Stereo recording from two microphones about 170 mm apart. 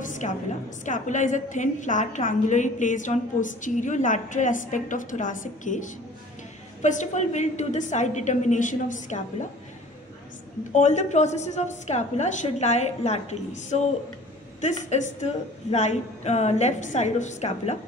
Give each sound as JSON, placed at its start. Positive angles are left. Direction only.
{"t": 0.0, "sound": "music", "side_deg": 45}
{"t": 0.8, "sound": "a woman's voice", "side_deg": 45}
{"t": 10.7, "sound": "a woman's voice", "side_deg": 45}